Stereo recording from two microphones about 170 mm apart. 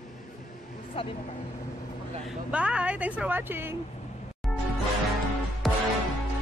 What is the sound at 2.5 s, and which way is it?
Speech, 5° right (ahead or behind).